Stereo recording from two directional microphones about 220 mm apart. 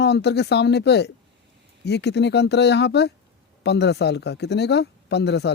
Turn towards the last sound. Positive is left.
turn(degrees=50)  # may be behind; listen again after turning